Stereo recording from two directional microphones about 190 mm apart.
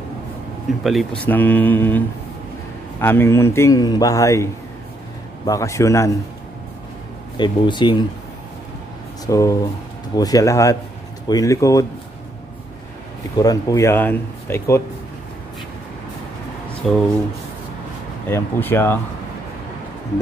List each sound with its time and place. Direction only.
0.8 s a man's voice: 5° left (ahead or behind)
5.5 s a man's voice: 15° left (ahead or behind)
7.3 s speech: 25° left (ahead or behind)
9.2 s a man's voice: 15° left (ahead or behind)
13.4 s a man's voice: 20° left (ahead or behind)
16.8 s speech: centre (ahead or behind)
18.3 s a man's voice: 10° left (ahead or behind)